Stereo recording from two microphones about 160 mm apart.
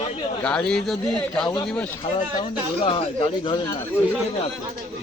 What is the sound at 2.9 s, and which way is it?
Speech, 30° left (ahead or behind).